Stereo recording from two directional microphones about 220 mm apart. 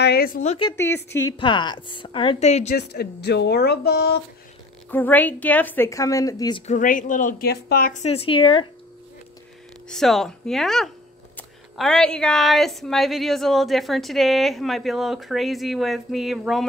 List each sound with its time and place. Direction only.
0.0 s a sound: 45° left (ahead or behind)
0.4 s a woman's voice: 25° left (ahead or behind)
0.7 s a woman's voice: 10° left (ahead or behind); by 2.7 s 30° left (ahead or behind)
2.7 s speech: 45° left (ahead or behind)
4.9 s a woman's voice: 10° left (ahead or behind)
6.7 s a woman's voice: 35° left (ahead or behind)
9.8 s speech: centre (ahead or behind)